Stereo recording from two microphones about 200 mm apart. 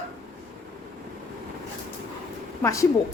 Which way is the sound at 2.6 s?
15° left (ahead or behind).